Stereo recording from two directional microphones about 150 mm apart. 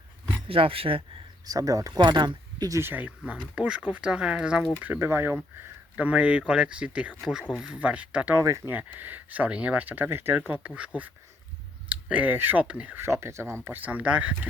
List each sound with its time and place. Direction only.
0.4 s speech: 35° right (ahead or behind)
1.5 s speech: 25° right (ahead or behind)